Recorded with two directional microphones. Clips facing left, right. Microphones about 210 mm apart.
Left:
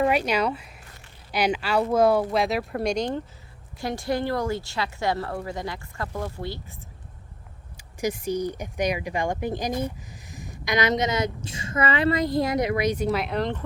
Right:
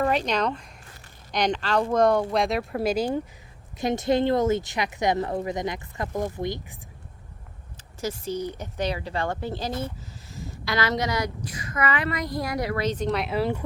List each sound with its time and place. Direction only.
0.0 s speech: 10° left (ahead or behind)
3.8 s a woman's voice: 20° right (ahead or behind)
8.0 s speech: 15° left (ahead or behind); by 13.6 s 5° right (ahead or behind)